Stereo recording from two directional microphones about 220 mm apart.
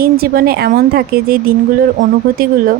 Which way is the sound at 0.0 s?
45° right (ahead or behind).